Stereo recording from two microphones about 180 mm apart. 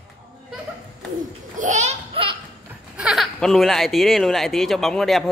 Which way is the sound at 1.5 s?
45° right (ahead or behind).